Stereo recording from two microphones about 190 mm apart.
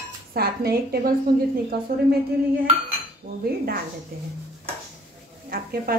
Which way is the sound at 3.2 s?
45° right (ahead or behind).